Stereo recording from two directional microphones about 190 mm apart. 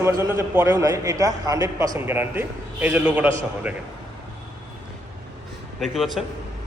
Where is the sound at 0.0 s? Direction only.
15° right (ahead or behind).